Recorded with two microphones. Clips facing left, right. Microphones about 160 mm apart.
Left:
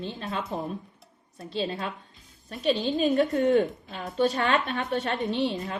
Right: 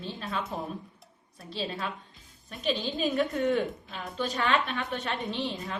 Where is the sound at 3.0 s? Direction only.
40° left (ahead or behind).